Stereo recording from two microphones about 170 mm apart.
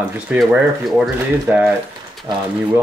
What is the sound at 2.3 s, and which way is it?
Speech, 25° right (ahead or behind).